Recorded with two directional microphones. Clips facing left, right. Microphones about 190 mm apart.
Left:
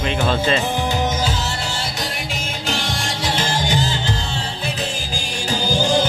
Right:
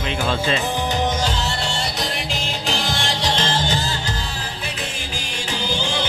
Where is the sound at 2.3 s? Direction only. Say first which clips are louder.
Even; centre (ahead or behind).